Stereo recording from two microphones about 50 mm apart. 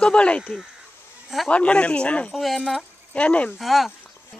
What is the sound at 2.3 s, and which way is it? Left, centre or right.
Speech, centre.